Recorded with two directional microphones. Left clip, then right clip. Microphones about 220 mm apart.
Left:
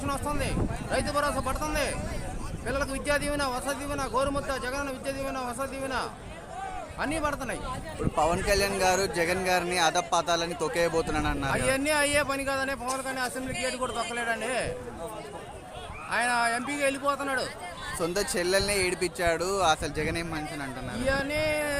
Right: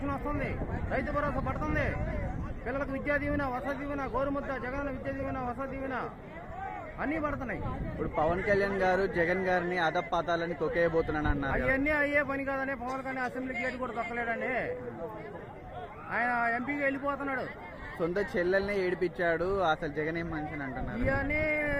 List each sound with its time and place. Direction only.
0.9 s a man's voice: 20° left (ahead or behind)
8.2 s speech: 10° left (ahead or behind)
16.1 s speech: 15° left (ahead or behind)